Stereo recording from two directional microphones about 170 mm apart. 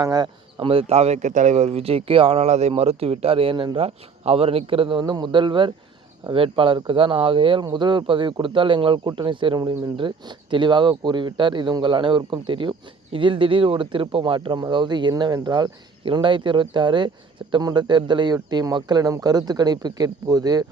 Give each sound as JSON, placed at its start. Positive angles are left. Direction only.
{"t": 0.0, "sound": "speech", "side_deg": -25}